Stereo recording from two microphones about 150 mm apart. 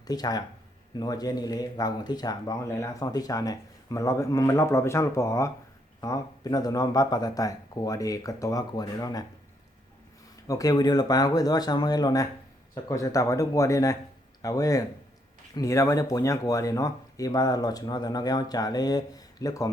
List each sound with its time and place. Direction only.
0.1 s speech: 25° left (ahead or behind)
10.4 s speech: 25° left (ahead or behind)